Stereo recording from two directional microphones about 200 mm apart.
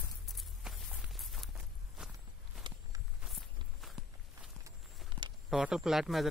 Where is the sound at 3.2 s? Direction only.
Centre (ahead or behind).